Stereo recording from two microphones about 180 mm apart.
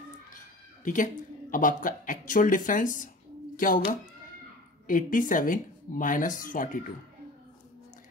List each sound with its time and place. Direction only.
0.8 s speech: 45° left (ahead or behind)
4.8 s speech: 45° left (ahead or behind)